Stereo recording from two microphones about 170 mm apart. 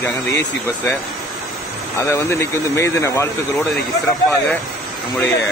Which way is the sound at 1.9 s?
15° left (ahead or behind).